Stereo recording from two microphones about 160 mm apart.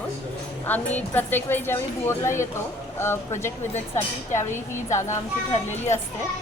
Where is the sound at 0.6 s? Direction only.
10° left (ahead or behind).